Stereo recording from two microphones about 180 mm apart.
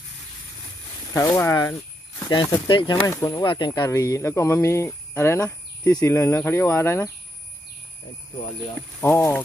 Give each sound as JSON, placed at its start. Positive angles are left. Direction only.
{"t": 1.1, "sound": "speech", "side_deg": 15}
{"t": 9.0, "sound": "speech", "side_deg": 15}